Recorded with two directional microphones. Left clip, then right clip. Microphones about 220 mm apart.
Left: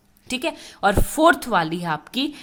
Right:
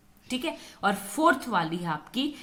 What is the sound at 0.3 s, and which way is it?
A woman's voice, 40° left (ahead or behind).